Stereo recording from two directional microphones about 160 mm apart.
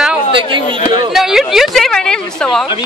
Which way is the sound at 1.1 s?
Centre (ahead or behind).